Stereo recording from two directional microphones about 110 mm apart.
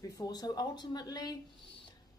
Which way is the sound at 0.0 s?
35° left (ahead or behind).